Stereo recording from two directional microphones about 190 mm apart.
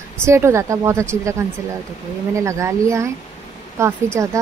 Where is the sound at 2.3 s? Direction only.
15° right (ahead or behind).